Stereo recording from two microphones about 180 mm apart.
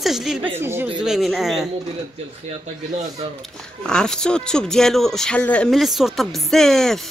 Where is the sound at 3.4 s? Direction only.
5° left (ahead or behind).